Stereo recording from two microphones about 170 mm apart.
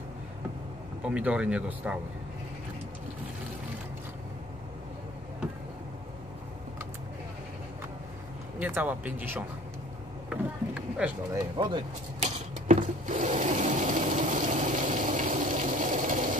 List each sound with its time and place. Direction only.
1.0 s speech: 5° right (ahead or behind)
8.5 s speech: 10° right (ahead or behind)
10.3 s vehicle: 5° right (ahead or behind)
11.5 s speech: 30° right (ahead or behind)
12.2 s water: 50° right (ahead or behind)